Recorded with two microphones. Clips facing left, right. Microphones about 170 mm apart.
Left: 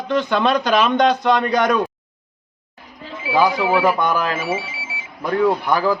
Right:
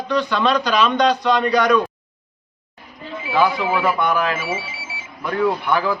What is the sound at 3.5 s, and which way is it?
A man's voice, 35° left (ahead or behind).